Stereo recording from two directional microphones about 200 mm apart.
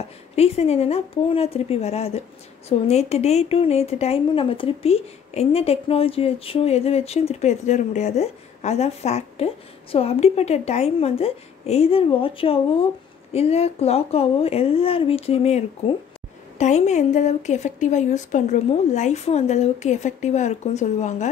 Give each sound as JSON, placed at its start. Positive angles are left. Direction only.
{"t": 0.4, "sound": "speech", "side_deg": 30}